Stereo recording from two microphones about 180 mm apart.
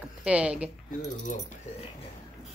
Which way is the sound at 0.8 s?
45° left (ahead or behind).